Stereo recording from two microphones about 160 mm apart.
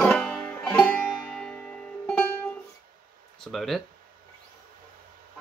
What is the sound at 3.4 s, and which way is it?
Speech, centre (ahead or behind).